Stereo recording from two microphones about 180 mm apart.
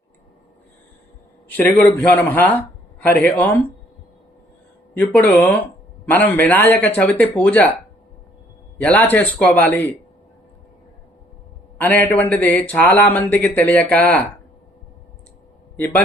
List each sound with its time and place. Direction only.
1.5 s a man's voice: 10° left (ahead or behind)
4.9 s speech: 10° left (ahead or behind)
8.8 s speech: 10° left (ahead or behind)
11.8 s speech: 10° left (ahead or behind)